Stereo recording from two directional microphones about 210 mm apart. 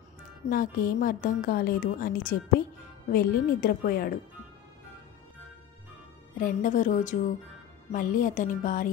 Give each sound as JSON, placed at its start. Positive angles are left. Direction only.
{"t": 0.5, "sound": "a woman's voice", "side_deg": 45}
{"t": 6.4, "sound": "a woman's voice", "side_deg": 40}